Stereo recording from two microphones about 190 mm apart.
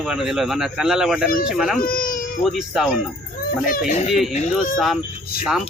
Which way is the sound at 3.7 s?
45° left (ahead or behind).